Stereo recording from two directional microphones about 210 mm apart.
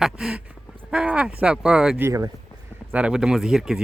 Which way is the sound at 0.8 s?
5° right (ahead or behind).